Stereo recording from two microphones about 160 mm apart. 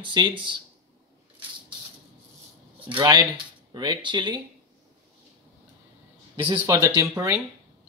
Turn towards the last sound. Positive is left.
turn(degrees=-20)  # may be behind; listen again after turning